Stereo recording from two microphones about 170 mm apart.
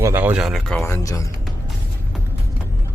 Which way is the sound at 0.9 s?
20° left (ahead or behind).